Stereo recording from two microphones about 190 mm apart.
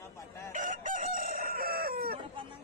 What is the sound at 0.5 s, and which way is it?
Chicken, 45° right (ahead or behind).